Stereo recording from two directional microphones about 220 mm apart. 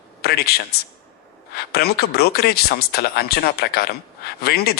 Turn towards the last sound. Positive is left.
turn(degrees=45)  # may be behind; listen again after turning